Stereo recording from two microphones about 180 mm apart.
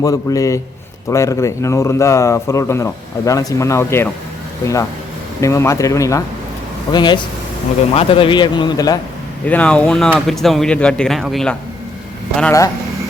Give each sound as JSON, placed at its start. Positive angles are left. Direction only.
{"t": 0.0, "sound": "a man's voice", "side_deg": 20}
{"t": 9.5, "sound": "speech", "side_deg": 10}
{"t": 12.4, "sound": "a man's voice", "side_deg": 15}